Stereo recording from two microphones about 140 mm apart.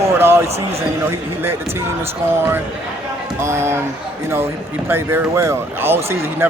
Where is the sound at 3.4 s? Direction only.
20° right (ahead or behind).